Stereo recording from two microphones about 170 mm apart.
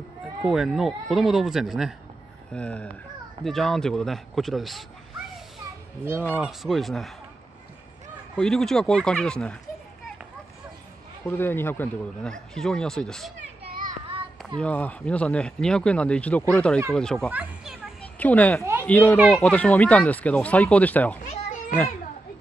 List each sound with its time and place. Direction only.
0.5 s speech: centre (ahead or behind)
6.3 s speech: 5° right (ahead or behind)
8.4 s speech: 5° left (ahead or behind)
11.2 s speech: 10° left (ahead or behind)
13.7 s children playing: 55° right (ahead or behind)
14.6 s speech: 10° left (ahead or behind)
17.3 s children playing: 10° right (ahead or behind)
18.0 s speech: 10° left (ahead or behind)
21.3 s children playing: 50° left (ahead or behind)